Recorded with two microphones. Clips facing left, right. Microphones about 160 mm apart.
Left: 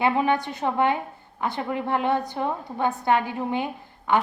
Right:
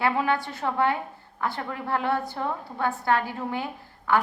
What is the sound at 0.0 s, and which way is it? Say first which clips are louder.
A woman's voice: left 3 dB; 20° left (ahead or behind).